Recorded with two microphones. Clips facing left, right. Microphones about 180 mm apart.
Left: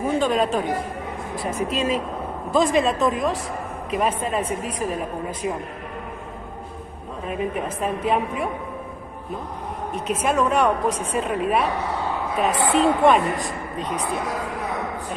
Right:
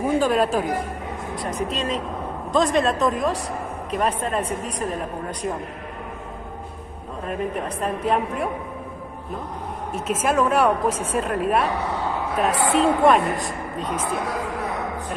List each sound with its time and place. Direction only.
0.2 s a woman's voice: 5° right (ahead or behind)
7.2 s a woman's voice: centre (ahead or behind)
9.9 s a woman's voice: centre (ahead or behind)